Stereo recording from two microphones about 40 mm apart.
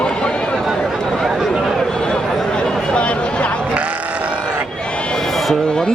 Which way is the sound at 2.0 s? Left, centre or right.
Centre.